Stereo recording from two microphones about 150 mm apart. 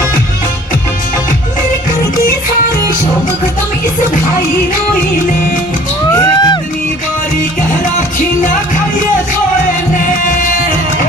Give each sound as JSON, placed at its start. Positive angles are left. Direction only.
{"t": 6.1, "sound": "music", "side_deg": 30}